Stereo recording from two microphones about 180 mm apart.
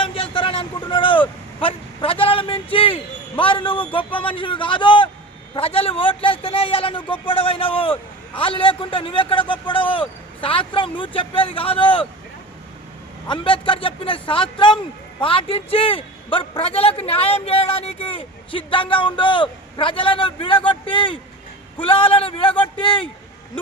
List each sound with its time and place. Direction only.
0.0 s a sound: 30° left (ahead or behind)
4.3 s a man's voice: 30° left (ahead or behind)
13.2 s a man's voice: 25° left (ahead or behind)